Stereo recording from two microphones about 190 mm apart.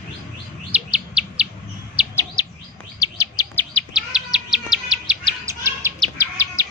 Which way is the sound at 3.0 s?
20° left (ahead or behind).